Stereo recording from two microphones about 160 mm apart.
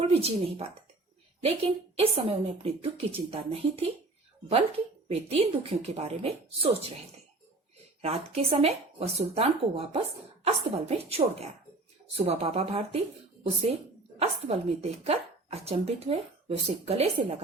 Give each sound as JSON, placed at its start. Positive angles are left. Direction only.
{"t": 0.1, "sound": "a woman's voice", "side_deg": -40}
{"t": 5.0, "sound": "a woman's voice", "side_deg": -40}
{"t": 8.0, "sound": "a woman's voice", "side_deg": -40}